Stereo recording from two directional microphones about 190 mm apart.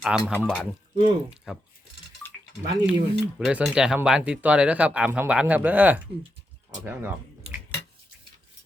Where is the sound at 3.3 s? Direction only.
Centre (ahead or behind).